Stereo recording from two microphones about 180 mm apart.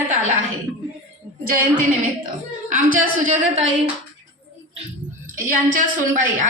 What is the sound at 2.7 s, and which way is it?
Speech, 45° right (ahead or behind).